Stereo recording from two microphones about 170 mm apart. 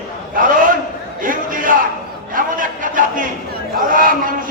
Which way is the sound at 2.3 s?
55° right (ahead or behind).